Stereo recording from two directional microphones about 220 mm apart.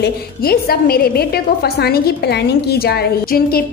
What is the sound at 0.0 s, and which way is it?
A woman's voice, 45° left (ahead or behind).